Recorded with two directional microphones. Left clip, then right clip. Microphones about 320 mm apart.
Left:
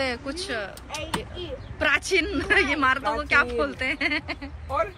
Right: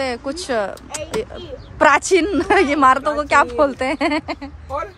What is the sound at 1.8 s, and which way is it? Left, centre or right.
A woman's voice, centre.